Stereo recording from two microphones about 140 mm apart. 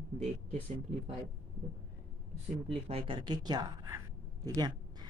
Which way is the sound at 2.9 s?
40° right (ahead or behind).